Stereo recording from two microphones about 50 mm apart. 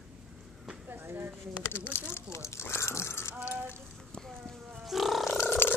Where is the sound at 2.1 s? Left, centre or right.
Left.